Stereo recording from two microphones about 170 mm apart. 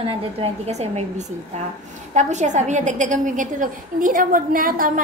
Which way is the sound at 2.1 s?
45° right (ahead or behind).